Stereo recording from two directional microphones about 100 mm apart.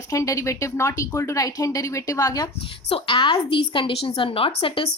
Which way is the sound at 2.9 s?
60° left (ahead or behind).